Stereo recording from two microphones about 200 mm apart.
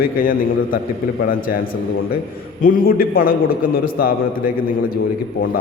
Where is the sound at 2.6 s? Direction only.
45° left (ahead or behind).